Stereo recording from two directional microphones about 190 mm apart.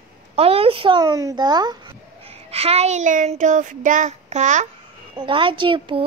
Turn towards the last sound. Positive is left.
turn(degrees=-25)  # may be behind; listen again after turning